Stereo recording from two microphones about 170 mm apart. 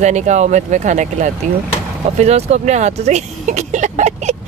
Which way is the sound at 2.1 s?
40° right (ahead or behind).